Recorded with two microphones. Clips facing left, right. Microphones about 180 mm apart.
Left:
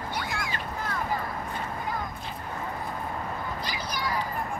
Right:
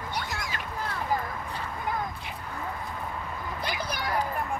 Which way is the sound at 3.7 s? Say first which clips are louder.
Right 2 dB; 60° right (ahead or behind).